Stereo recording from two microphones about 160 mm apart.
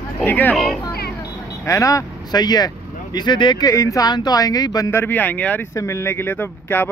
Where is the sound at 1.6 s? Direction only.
20° left (ahead or behind).